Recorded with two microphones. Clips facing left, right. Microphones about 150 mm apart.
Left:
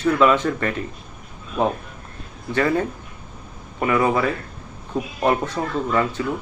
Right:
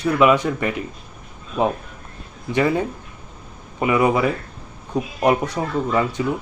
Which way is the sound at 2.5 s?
15° right (ahead or behind).